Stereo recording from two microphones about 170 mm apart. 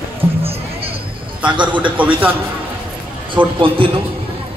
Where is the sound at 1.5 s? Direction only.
30° right (ahead or behind).